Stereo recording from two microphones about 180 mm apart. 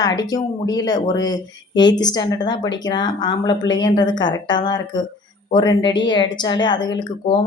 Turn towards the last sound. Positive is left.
turn(degrees=25)  # may be behind; listen again after turning